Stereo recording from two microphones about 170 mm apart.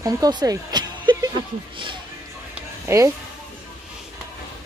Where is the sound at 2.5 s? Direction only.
15° right (ahead or behind).